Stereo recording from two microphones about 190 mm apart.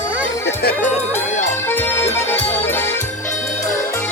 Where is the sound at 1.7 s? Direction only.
10° left (ahead or behind).